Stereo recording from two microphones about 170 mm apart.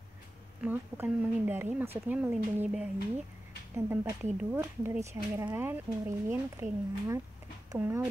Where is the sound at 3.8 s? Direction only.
15° right (ahead or behind).